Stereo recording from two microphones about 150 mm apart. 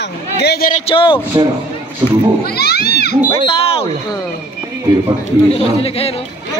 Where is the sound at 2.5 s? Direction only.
90° left.